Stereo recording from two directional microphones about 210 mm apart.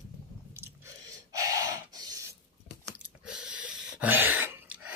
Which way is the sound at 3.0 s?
5° right (ahead or behind).